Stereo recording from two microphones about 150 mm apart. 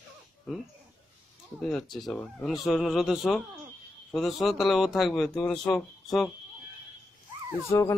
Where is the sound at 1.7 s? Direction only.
Centre (ahead or behind).